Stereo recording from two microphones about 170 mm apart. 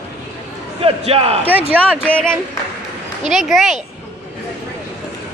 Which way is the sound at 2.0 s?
5° left (ahead or behind).